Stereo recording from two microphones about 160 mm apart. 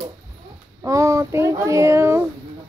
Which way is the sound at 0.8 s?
20° right (ahead or behind).